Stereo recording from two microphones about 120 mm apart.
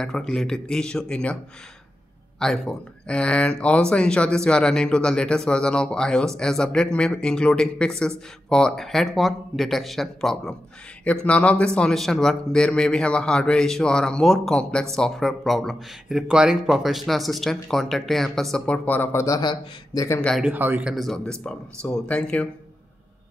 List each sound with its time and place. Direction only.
0.0 s a man's voice: 5° left (ahead or behind)
18.9 s a man's voice: 15° left (ahead or behind)
19.2 s a man's voice: 35° left (ahead or behind)
20.2 s a man's voice: 5° left (ahead or behind)
20.4 s speech: 15° right (ahead or behind)
20.9 s a man's voice: centre (ahead or behind)